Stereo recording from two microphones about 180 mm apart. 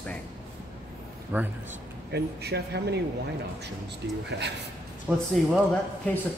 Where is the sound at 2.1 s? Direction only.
65° right (ahead or behind).